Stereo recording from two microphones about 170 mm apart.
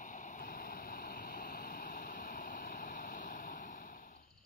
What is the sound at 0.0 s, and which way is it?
Waves, 50° left (ahead or behind).